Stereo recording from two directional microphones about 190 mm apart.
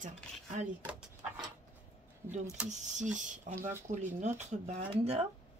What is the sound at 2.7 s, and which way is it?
Speech, 40° right (ahead or behind).